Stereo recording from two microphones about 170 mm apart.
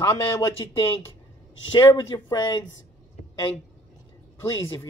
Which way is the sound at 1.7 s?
25° left (ahead or behind).